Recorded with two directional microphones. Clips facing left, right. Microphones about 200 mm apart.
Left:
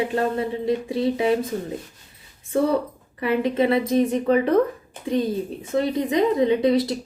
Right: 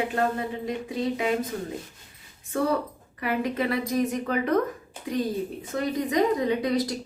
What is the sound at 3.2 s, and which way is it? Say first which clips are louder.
A woman's voice: left 6 dB; 25° left (ahead or behind).